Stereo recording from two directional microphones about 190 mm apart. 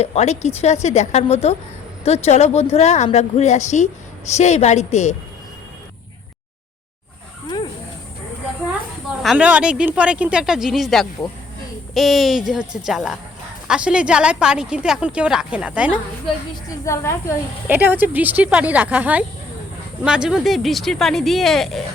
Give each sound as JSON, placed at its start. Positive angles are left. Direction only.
{"t": 0.0, "sound": "a woman's voice", "side_deg": 35}
{"t": 7.4, "sound": "dog", "side_deg": 25}
{"t": 9.2, "sound": "speech", "side_deg": -5}
{"t": 16.6, "sound": "a woman's voice", "side_deg": 15}
{"t": 17.7, "sound": "speech", "side_deg": -10}